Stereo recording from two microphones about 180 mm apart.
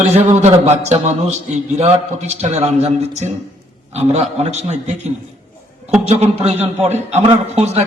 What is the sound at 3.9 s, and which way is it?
A man's voice, 35° right (ahead or behind).